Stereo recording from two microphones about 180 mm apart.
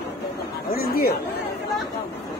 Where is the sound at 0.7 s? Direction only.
55° left (ahead or behind).